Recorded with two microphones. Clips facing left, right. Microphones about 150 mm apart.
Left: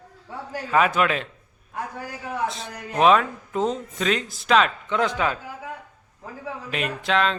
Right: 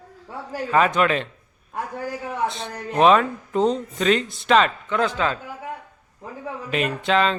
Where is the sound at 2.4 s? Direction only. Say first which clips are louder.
Right 2 dB; centre (ahead or behind).